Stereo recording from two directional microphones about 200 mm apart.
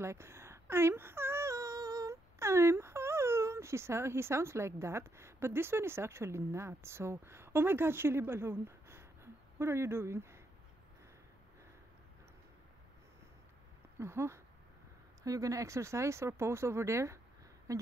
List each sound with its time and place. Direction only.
0.0 s speech: 15° right (ahead or behind)
13.9 s speech: 15° right (ahead or behind)